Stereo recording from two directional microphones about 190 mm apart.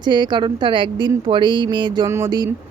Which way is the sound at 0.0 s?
20° right (ahead or behind).